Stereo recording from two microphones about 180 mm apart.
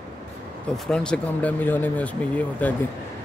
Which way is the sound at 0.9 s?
5° left (ahead or behind).